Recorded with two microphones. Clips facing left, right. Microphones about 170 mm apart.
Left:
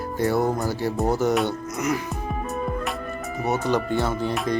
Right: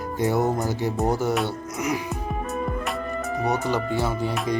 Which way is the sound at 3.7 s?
5° right (ahead or behind).